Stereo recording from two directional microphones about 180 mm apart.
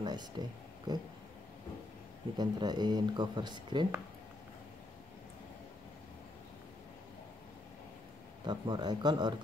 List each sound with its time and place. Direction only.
0.0 s speech: 25° right (ahead or behind)
2.3 s speech: 20° right (ahead or behind)
8.5 s speech: 25° right (ahead or behind)